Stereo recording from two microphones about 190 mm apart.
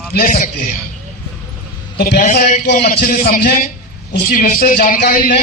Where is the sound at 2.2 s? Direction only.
40° left (ahead or behind).